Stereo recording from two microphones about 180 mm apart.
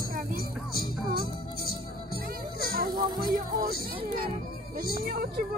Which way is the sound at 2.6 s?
55° right (ahead or behind).